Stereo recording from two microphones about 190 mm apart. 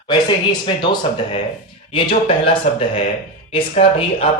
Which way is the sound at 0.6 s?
25° left (ahead or behind).